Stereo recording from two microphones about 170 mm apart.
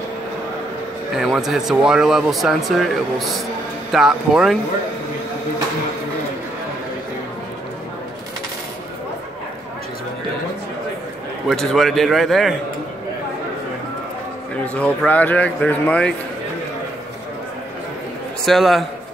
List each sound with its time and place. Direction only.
1.1 s speech: centre (ahead or behind)
11.4 s speech: 5° left (ahead or behind)
14.6 s speech: 10° left (ahead or behind)
18.4 s speech: centre (ahead or behind)